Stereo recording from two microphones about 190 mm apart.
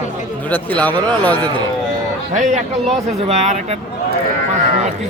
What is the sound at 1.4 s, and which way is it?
Speech, 25° right (ahead or behind).